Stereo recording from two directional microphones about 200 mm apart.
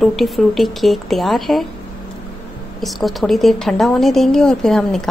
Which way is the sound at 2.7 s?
Centre (ahead or behind).